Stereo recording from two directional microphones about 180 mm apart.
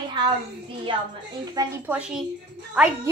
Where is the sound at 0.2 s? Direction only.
25° right (ahead or behind).